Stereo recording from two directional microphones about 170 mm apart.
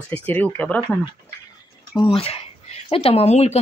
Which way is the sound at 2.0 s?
35° left (ahead or behind).